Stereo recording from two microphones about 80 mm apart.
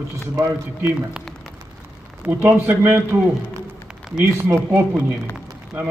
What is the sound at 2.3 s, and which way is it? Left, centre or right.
Speech, right.